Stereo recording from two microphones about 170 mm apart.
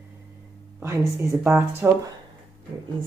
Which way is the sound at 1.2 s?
15° right (ahead or behind).